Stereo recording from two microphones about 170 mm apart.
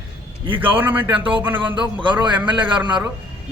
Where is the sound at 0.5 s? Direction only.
10° right (ahead or behind).